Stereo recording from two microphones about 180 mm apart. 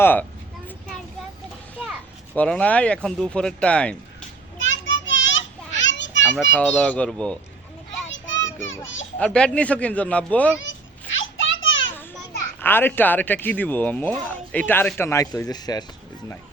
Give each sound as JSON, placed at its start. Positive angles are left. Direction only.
{"t": 0.0, "sound": "speech", "side_deg": 10}
{"t": 2.3, "sound": "speech", "side_deg": 5}
{"t": 4.5, "sound": "children playing", "side_deg": 90}
{"t": 6.3, "sound": "speech", "side_deg": 5}
{"t": 8.1, "sound": "children playing", "side_deg": 90}
{"t": 9.1, "sound": "speech", "side_deg": 5}
{"t": 11.2, "sound": "a sound", "side_deg": 90}
{"t": 12.5, "sound": "speech", "side_deg": 10}